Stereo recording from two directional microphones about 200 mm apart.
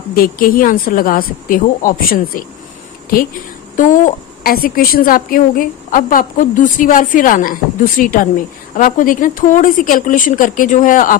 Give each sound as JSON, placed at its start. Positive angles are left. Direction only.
{"t": 0.1, "sound": "a woman's voice", "side_deg": 45}
{"t": 3.8, "sound": "a woman's voice", "side_deg": 40}